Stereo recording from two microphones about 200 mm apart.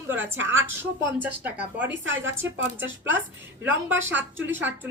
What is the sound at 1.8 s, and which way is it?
Speech, 70° right (ahead or behind).